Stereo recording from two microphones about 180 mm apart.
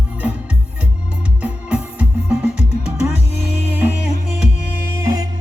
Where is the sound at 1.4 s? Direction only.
5° right (ahead or behind).